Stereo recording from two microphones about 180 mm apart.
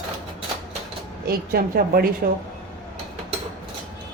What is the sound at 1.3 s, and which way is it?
Speech, 55° right (ahead or behind).